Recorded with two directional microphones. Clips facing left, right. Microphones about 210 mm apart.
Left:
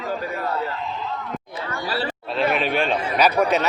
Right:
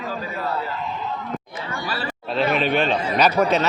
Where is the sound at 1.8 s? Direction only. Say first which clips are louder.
Left 4 dB; 35° left (ahead or behind).